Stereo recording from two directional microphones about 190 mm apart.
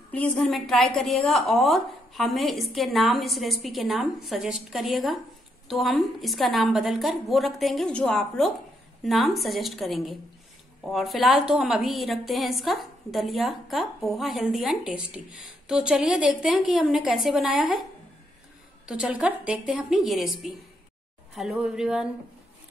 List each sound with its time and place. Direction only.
0.1 s a woman's voice: 5° left (ahead or behind)
18.9 s a woman's voice: 5° right (ahead or behind)